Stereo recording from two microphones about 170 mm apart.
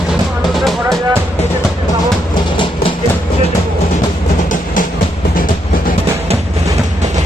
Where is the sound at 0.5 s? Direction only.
Centre (ahead or behind).